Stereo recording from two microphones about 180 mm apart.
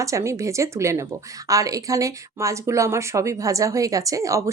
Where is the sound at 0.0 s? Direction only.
15° right (ahead or behind).